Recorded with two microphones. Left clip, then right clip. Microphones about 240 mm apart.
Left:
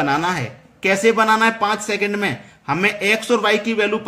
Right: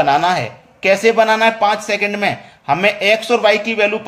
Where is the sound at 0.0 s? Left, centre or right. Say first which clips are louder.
Right 6 dB; centre.